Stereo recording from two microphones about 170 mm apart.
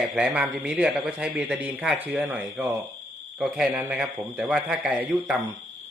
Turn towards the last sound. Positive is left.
turn(degrees=-5)  # may be behind; listen again after turning